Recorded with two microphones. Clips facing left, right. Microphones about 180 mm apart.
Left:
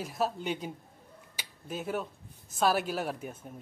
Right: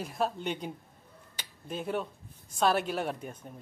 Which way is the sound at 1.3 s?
5° left (ahead or behind).